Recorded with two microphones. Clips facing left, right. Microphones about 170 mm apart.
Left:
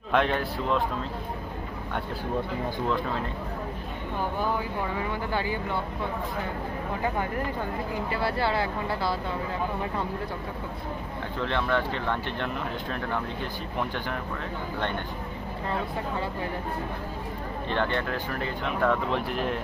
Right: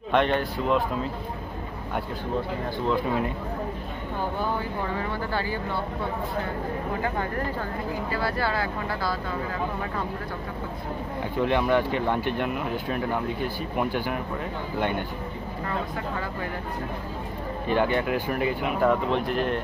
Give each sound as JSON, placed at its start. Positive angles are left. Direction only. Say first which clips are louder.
{"t": 0.1, "sound": "speech", "louder": "right 2 dB", "side_deg": 0}
{"t": 5.3, "sound": "speech", "louder": "left 1 dB", "side_deg": 15}
{"t": 8.1, "sound": "speech", "louder": "left 1 dB", "side_deg": 25}
{"t": 11.3, "sound": "speech", "louder": "right 5 dB", "side_deg": -15}
{"t": 17.6, "sound": "speech", "louder": "right 5 dB", "side_deg": -10}